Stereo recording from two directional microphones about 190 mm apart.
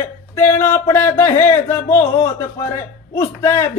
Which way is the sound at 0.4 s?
15° left (ahead or behind).